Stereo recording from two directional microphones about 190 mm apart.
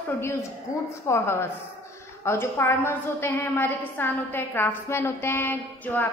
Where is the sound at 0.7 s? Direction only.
40° left (ahead or behind).